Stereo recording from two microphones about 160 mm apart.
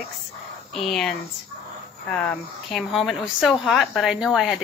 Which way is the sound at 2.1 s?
5° left (ahead or behind).